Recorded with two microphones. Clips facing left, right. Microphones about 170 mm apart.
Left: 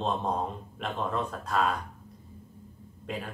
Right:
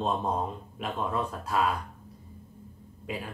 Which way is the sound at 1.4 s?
5° right (ahead or behind).